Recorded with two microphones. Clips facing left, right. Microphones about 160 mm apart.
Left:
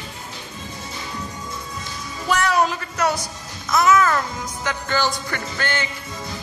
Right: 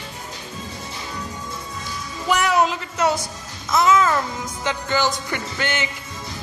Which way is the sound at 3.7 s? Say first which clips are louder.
Even; 25° right (ahead or behind).